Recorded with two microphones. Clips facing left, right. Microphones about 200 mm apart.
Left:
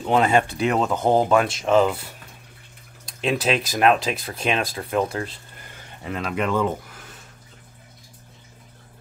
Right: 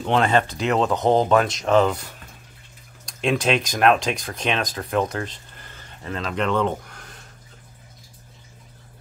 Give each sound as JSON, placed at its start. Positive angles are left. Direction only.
{"t": 0.0, "sound": "speech", "side_deg": 5}
{"t": 3.1, "sound": "speech", "side_deg": 5}